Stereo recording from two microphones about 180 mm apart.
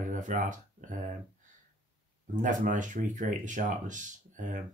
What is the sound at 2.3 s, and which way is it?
Speech, 45° right (ahead or behind).